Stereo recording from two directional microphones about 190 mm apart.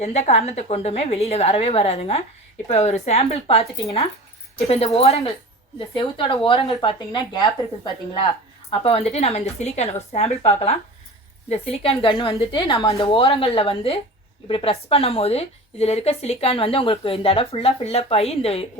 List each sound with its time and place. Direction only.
0.0 s a woman's voice: 35° left (ahead or behind)
4.9 s a woman's voice: 30° left (ahead or behind)
8.7 s a woman's voice: 30° left (ahead or behind)